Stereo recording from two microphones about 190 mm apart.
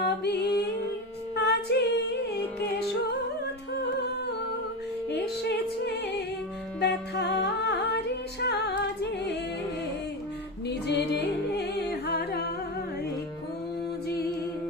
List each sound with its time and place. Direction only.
0.0 s music: 60° left (ahead or behind)
5.5 s music: 60° left (ahead or behind)
10.7 s music: 60° left (ahead or behind)